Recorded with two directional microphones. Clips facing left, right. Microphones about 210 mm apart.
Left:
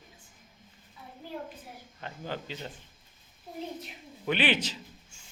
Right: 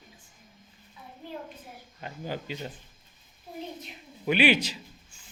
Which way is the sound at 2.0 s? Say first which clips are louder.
Right 2 dB; 10° right (ahead or behind).